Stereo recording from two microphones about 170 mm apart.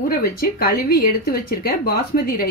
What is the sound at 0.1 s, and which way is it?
Speech, 65° left (ahead or behind).